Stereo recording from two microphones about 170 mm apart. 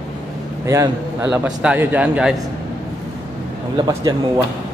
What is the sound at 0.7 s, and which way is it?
A man's voice, 15° right (ahead or behind).